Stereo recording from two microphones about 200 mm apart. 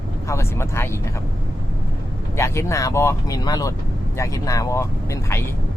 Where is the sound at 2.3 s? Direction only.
15° left (ahead or behind).